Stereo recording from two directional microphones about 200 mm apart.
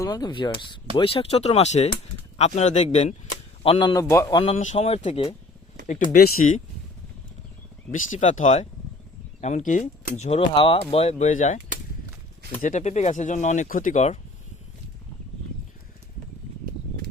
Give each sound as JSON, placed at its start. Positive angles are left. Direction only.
{"t": 0.0, "sound": "speech", "side_deg": 20}
{"t": 4.5, "sound": "speech", "side_deg": 35}
{"t": 5.9, "sound": "speech", "side_deg": 45}
{"t": 7.9, "sound": "speech", "side_deg": 40}
{"t": 12.6, "sound": "speech", "side_deg": 35}